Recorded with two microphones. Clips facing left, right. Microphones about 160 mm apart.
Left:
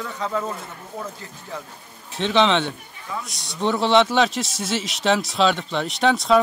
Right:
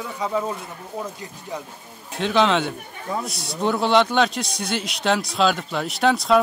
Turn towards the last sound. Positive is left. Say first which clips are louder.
# even
turn(degrees=0)  # may be behind; listen again after turning